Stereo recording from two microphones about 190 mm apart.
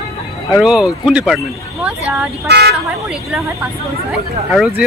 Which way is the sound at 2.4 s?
60° right (ahead or behind).